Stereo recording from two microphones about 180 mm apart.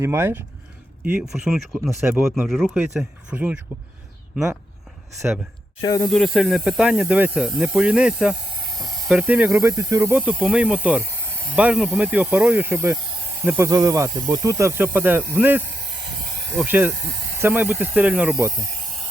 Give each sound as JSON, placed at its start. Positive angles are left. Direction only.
{"t": 0.0, "sound": "speech", "side_deg": -15}
{"t": 1.3, "sound": "speech", "side_deg": 0}
{"t": 1.9, "sound": "speech", "side_deg": -15}
{"t": 2.5, "sound": "speech", "side_deg": 0}
{"t": 5.2, "sound": "speech", "side_deg": -10}
{"t": 5.8, "sound": "speech", "side_deg": 20}
{"t": 6.1, "sound": "speech", "side_deg": 0}
{"t": 16.6, "sound": "speech", "side_deg": -10}